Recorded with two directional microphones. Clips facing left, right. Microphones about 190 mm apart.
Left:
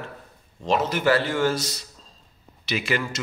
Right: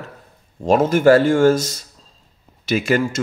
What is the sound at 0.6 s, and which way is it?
Speech, 50° right (ahead or behind).